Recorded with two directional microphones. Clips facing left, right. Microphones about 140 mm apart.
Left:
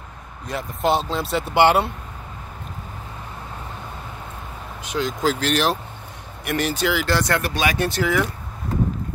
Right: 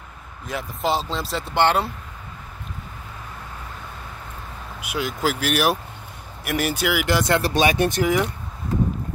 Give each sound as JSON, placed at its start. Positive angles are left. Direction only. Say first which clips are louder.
{"t": 0.5, "sound": "speech", "louder": "left 3 dB", "side_deg": 0}
{"t": 4.8, "sound": "speech", "louder": "left 2 dB", "side_deg": -10}